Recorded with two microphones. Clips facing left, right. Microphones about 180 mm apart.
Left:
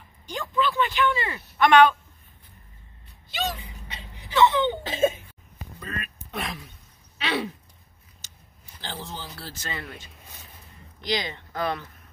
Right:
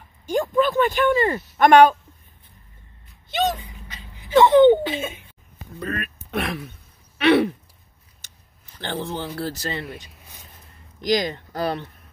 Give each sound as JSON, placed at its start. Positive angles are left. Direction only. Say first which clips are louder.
{"t": 0.3, "sound": "speech", "louder": "right 7 dB", "side_deg": -45}
{"t": 3.3, "sound": "a sound", "louder": "right 8 dB", "side_deg": -50}
{"t": 3.6, "sound": "vehicle", "louder": "even", "side_deg": 30}
{"t": 4.3, "sound": "speech", "louder": "right 9 dB", "side_deg": -50}
{"t": 5.8, "sound": "speech", "louder": "right 8 dB", "side_deg": -60}
{"t": 7.2, "sound": "a sound", "louder": "right 12 dB", "side_deg": -60}
{"t": 8.8, "sound": "speech", "louder": "right 9 dB", "side_deg": -60}
{"t": 9.8, "sound": "a sound", "louder": "right 5 dB", "side_deg": -15}
{"t": 11.0, "sound": "speech", "louder": "right 7 dB", "side_deg": -45}